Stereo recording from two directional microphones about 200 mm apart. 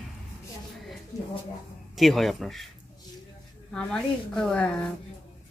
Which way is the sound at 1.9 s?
Centre (ahead or behind).